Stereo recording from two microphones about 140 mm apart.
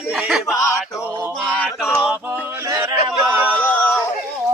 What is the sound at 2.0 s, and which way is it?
Male singing, 10° right (ahead or behind).